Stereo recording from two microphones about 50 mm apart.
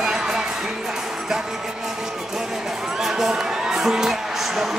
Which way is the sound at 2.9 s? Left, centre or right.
Centre.